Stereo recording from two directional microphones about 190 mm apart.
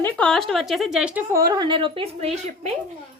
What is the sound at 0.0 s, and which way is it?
Speech, 5° left (ahead or behind).